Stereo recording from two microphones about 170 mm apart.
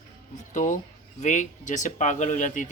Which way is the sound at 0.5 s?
50° left (ahead or behind).